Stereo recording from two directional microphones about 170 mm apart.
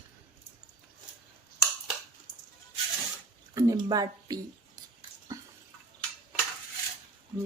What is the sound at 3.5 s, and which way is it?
Speech, 20° right (ahead or behind).